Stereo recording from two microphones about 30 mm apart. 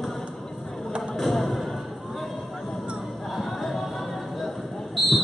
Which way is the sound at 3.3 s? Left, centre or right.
Centre.